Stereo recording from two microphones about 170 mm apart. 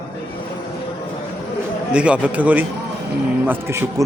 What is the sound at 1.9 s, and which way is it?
Speech, 5° right (ahead or behind).